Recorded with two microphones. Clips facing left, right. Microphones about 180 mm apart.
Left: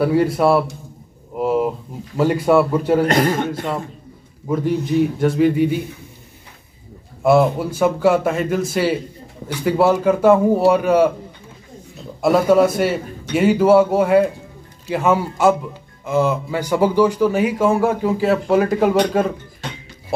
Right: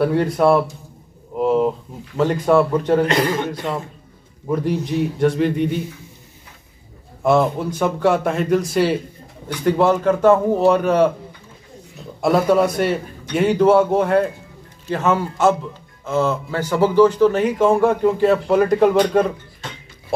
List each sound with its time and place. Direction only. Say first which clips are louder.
0.0 s speech: left 1 dB; 5° left (ahead or behind)
1.3 s a sound: right 1 dB; 5° left (ahead or behind)
2.1 s a man's voice: left 1 dB; 5° left (ahead or behind)
3.1 s speech: left 2 dB; 50° left (ahead or behind)
4.5 s speech: left 1 dB; centre (ahead or behind)
7.2 s a man's voice: left 2 dB; 5° left (ahead or behind)
12.2 s a man's voice: left 2 dB; 5° left (ahead or behind)